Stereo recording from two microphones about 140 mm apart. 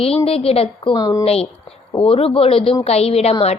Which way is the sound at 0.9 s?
25° left (ahead or behind).